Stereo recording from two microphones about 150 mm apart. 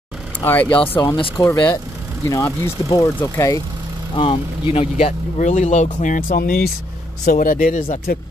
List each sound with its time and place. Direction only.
0.4 s speech: 15° left (ahead or behind)
1.0 s speech: 25° left (ahead or behind)
4.1 s speech: 35° left (ahead or behind); by 8.2 s 60° left (ahead or behind)